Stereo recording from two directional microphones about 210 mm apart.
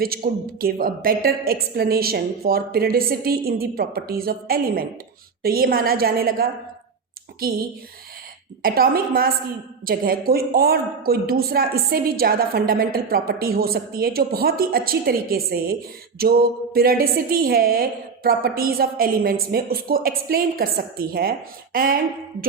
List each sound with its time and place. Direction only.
0.2 s a woman's voice: 40° right (ahead or behind)
8.6 s a woman's voice: 45° right (ahead or behind)